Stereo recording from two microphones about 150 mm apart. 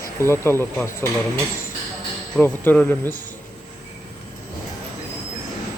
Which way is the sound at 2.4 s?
10° left (ahead or behind).